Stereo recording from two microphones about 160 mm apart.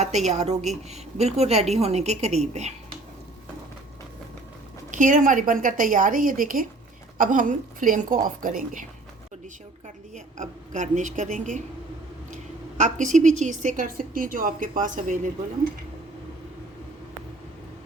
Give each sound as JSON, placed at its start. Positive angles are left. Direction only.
{"t": 0.0, "sound": "a woman's voice", "side_deg": -45}
{"t": 4.9, "sound": "a woman's voice", "side_deg": -50}